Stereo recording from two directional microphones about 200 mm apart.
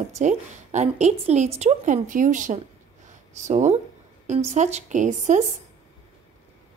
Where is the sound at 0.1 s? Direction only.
35° right (ahead or behind).